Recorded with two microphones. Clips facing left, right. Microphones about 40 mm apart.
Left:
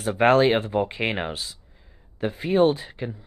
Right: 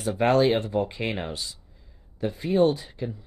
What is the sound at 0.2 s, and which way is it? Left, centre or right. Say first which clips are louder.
Speech: left 3 dB; left.